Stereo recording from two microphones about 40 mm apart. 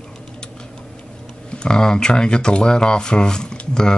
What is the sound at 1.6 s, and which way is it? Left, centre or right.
Speech, centre.